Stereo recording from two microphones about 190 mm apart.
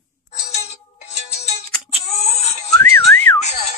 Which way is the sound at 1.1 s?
35° left (ahead or behind).